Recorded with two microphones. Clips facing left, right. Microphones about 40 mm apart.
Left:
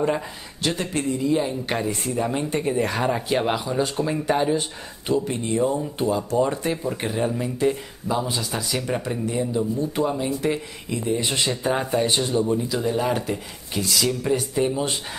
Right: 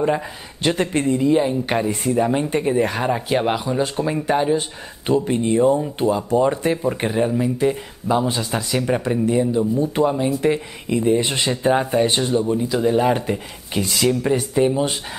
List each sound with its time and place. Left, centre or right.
0.6 s speech: right; by 4.6 s centre
5.0 s speech: right; by 7.7 s centre
8.1 s speech: centre